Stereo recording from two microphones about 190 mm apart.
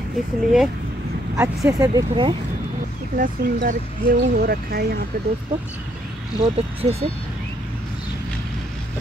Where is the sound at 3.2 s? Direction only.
45° right (ahead or behind).